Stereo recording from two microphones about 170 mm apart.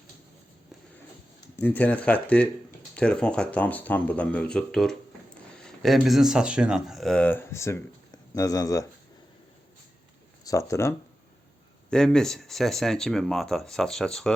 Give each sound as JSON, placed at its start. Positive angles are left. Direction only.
{"t": 1.5, "sound": "speech", "side_deg": 10}
{"t": 10.4, "sound": "speech", "side_deg": 20}
{"t": 11.9, "sound": "speech", "side_deg": 5}